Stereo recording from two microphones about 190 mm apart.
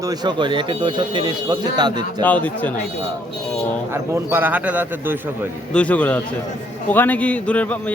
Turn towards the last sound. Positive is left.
turn(degrees=5)  # may be behind; listen again after turning